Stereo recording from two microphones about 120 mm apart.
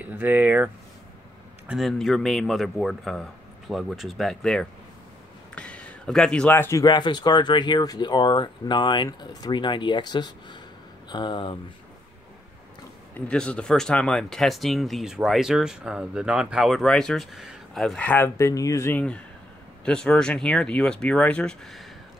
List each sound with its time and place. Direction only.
0.0 s speech: 15° right (ahead or behind)
1.7 s speech: centre (ahead or behind); by 6.8 s 15° left (ahead or behind)
6.8 s speech: 35° left (ahead or behind)
13.1 s speech: 10° left (ahead or behind)
18.0 s speech: 15° left (ahead or behind)
18.9 s speech: 10° left (ahead or behind)